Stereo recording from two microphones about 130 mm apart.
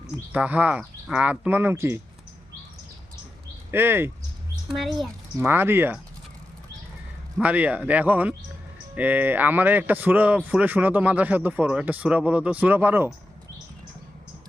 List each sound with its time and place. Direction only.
0.3 s a man's voice: 10° right (ahead or behind)
3.7 s a man's voice: 15° right (ahead or behind)
4.7 s speech: centre (ahead or behind)
5.4 s a man's voice: 15° right (ahead or behind)
7.3 s a man's voice: 10° right (ahead or behind)